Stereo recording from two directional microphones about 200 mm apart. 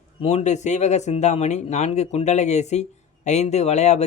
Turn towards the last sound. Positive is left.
turn(degrees=35)  # may be behind; listen again after turning